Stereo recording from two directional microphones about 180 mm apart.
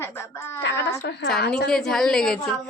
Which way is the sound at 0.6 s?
70° left (ahead or behind).